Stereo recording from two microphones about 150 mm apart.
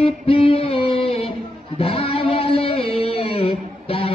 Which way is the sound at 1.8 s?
40° left (ahead or behind).